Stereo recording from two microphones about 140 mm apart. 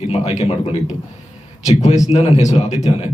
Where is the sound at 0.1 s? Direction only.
50° left (ahead or behind).